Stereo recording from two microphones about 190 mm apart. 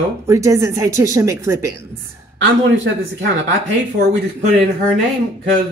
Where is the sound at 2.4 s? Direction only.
90° right.